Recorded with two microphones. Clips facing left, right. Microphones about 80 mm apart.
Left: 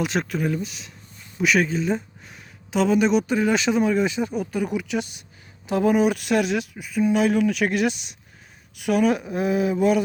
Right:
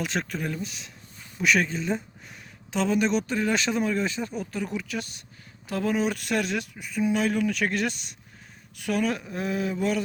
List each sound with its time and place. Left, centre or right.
0.0 s speech: centre